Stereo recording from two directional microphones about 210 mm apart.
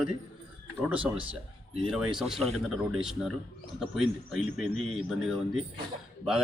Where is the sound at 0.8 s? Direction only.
5° right (ahead or behind).